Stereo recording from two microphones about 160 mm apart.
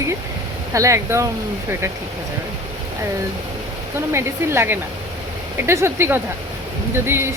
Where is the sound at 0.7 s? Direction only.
20° right (ahead or behind).